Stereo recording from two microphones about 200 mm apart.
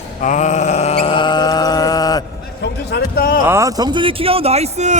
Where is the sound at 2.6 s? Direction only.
55° left (ahead or behind).